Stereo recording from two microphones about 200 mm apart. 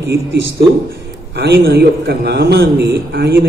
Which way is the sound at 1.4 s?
55° right (ahead or behind).